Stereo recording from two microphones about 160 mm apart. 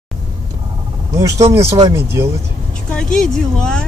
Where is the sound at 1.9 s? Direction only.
15° right (ahead or behind).